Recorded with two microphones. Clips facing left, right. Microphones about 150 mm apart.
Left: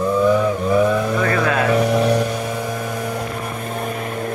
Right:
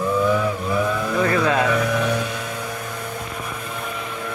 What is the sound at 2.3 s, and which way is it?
Vehicle, 45° left (ahead or behind).